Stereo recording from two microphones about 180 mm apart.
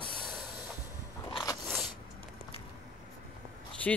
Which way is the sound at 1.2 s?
25° left (ahead or behind).